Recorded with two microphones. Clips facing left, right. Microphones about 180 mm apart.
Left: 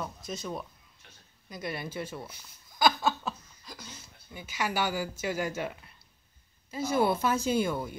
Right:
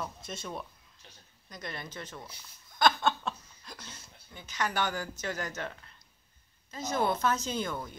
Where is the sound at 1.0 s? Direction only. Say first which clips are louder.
Right 2 dB; 30° right (ahead or behind).